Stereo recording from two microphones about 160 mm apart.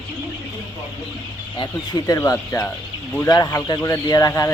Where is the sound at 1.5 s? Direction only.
25° left (ahead or behind).